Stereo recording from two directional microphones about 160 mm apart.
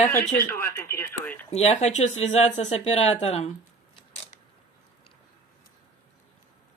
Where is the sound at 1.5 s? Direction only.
45° left (ahead or behind).